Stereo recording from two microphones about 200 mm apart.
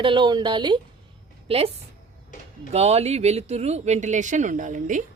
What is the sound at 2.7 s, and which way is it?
Speech, 30° right (ahead or behind).